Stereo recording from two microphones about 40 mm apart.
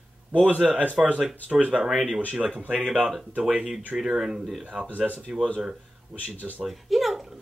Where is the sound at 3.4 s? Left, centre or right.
Centre.